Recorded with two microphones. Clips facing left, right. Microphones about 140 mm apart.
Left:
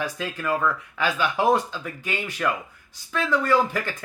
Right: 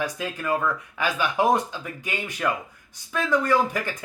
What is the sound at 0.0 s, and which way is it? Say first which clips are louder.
Speech: even; 15° right (ahead or behind).